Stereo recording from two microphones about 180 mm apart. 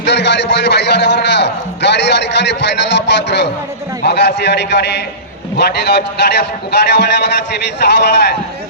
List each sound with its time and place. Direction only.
0.0 s a man's voice: 75° left (ahead or behind)